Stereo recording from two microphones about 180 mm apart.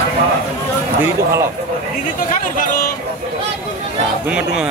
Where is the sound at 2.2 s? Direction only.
50° left (ahead or behind).